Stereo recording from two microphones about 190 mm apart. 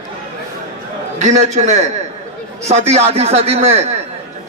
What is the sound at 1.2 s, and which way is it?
A man's voice, 35° right (ahead or behind).